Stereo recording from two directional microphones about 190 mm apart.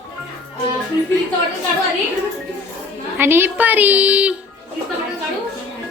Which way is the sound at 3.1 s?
10° right (ahead or behind).